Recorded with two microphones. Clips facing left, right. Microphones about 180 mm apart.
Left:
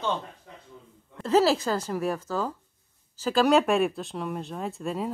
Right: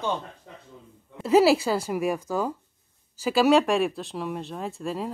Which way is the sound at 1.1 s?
10° right (ahead or behind).